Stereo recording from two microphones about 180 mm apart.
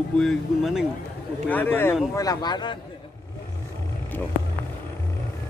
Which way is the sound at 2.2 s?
20° left (ahead or behind).